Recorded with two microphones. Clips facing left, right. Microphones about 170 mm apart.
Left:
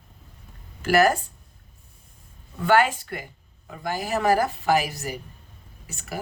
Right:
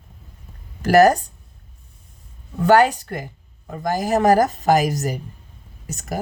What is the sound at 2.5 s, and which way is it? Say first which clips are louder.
Speech: right 5 dB; 40° right (ahead or behind).